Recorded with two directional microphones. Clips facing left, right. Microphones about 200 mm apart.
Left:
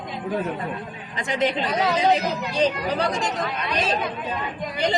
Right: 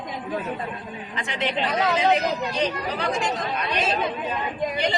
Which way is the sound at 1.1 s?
40° left (ahead or behind).